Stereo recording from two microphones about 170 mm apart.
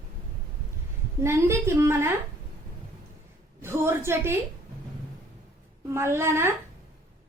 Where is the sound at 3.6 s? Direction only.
15° right (ahead or behind).